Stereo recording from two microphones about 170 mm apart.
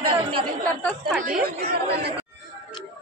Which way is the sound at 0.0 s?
30° right (ahead or behind).